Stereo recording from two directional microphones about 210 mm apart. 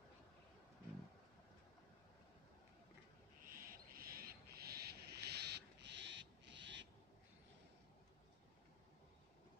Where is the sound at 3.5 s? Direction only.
45° right (ahead or behind); by 6.8 s 60° right (ahead or behind).